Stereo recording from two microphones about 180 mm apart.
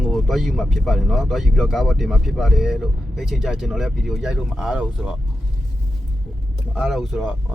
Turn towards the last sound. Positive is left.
turn(degrees=0)  # may be behind; listen again after turning